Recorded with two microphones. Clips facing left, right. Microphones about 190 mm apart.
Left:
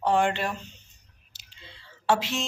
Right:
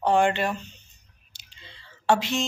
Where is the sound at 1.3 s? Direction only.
5° left (ahead or behind).